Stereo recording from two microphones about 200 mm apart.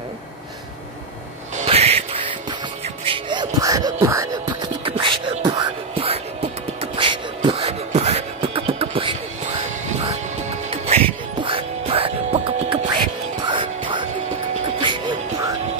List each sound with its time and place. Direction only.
1.6 s a sound: 30° right (ahead or behind)
3.1 s music: 25° right (ahead or behind)
10.7 s music: 30° right (ahead or behind)